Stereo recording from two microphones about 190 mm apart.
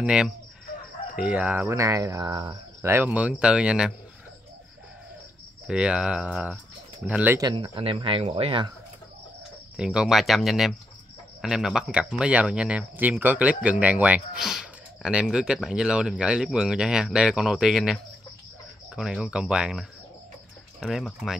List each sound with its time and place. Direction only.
0.0 s speech: 5° right (ahead or behind); by 2.9 s 25° right (ahead or behind)
2.9 s speech: 10° right (ahead or behind)
5.7 s speech: 5° right (ahead or behind)
7.4 s speech: 25° right (ahead or behind)
9.8 s speech: 5° right (ahead or behind)